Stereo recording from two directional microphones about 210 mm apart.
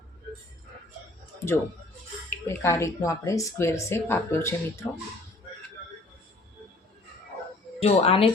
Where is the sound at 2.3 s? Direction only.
15° left (ahead or behind).